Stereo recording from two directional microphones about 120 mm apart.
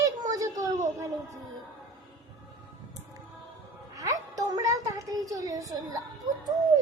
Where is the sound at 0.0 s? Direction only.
30° right (ahead or behind).